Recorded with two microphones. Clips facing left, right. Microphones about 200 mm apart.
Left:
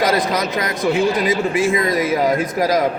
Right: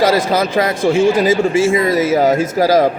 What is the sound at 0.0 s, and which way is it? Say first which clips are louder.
A man's voice: right 4 dB; 30° right (ahead or behind).